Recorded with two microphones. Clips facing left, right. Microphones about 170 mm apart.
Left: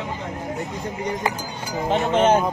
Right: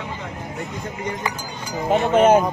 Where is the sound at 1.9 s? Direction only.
10° right (ahead or behind).